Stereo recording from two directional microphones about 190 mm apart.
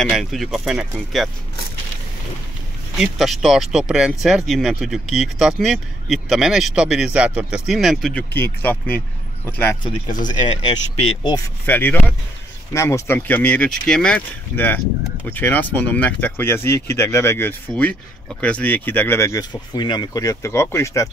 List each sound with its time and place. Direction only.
0.1 s speech: centre (ahead or behind)
3.0 s speech: centre (ahead or behind)
11.0 s speech: 25° left (ahead or behind)
11.6 s speech: 10° left (ahead or behind)